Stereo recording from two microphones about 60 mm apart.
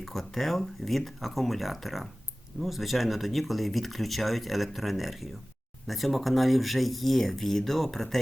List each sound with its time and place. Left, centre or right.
0.0 s speech: centre